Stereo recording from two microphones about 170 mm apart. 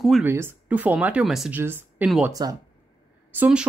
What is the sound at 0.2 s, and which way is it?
Speech, 15° right (ahead or behind).